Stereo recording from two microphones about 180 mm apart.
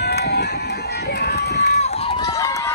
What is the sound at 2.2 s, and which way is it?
Run, 20° left (ahead or behind).